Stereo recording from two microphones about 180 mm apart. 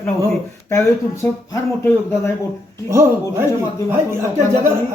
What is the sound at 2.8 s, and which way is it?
Speech, 15° right (ahead or behind).